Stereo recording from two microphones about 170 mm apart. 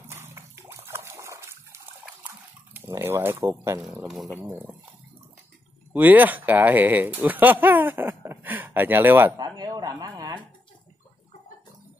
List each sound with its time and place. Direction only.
0.1 s water: 15° right (ahead or behind)
4.1 s speech: centre (ahead or behind)
4.4 s speech: 10° right (ahead or behind)
5.9 s speech: 10° right (ahead or behind)
9.4 s a sound: 25° right (ahead or behind)